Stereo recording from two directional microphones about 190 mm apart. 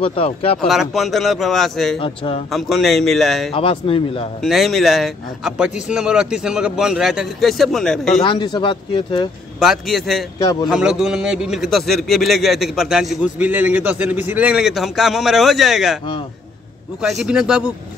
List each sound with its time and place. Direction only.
0.0 s speech: 30° left (ahead or behind)
0.6 s a man's voice: centre (ahead or behind)
2.0 s speech: 30° left (ahead or behind)
2.5 s a man's voice: centre (ahead or behind)
3.5 s speech: 30° left (ahead or behind)
4.4 s a man's voice: centre (ahead or behind)
8.2 s speech: 25° left (ahead or behind)
9.6 s a man's voice: centre (ahead or behind)
10.4 s speech: 20° left (ahead or behind)
10.7 s a man's voice: 5° right (ahead or behind)
17.0 s a man's voice: centre (ahead or behind)